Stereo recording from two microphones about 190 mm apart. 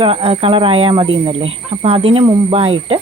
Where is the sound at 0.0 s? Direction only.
30° right (ahead or behind).